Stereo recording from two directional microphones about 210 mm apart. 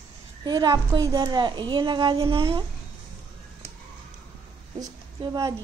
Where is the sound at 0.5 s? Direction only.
20° right (ahead or behind).